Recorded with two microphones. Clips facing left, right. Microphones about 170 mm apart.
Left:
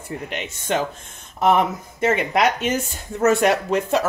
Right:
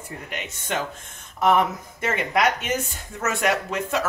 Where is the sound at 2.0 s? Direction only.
25° left (ahead or behind).